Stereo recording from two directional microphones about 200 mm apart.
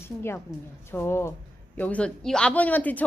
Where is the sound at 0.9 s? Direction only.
10° left (ahead or behind).